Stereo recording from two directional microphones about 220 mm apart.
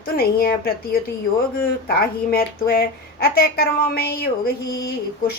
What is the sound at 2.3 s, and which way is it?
A woman's voice, 45° left (ahead or behind).